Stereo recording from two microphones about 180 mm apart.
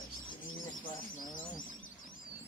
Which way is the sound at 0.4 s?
50° left (ahead or behind).